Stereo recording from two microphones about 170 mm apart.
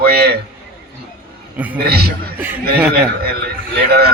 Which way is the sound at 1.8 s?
65° right (ahead or behind).